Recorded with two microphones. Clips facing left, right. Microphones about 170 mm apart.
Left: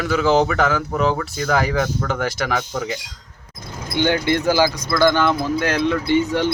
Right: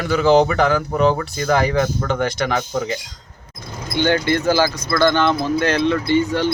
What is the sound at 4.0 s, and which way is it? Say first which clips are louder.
Speech: right 1 dB; 15° left (ahead or behind).